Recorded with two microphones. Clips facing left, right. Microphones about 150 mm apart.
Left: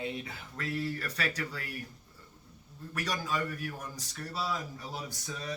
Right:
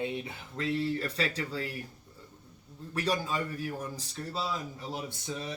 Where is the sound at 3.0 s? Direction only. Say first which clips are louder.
Right 3 dB; 30° right (ahead or behind).